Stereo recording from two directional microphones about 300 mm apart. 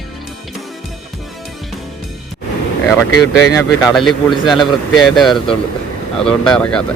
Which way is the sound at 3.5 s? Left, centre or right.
Centre.